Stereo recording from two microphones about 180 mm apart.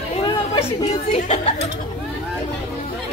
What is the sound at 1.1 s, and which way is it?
Speech, 35° left (ahead or behind).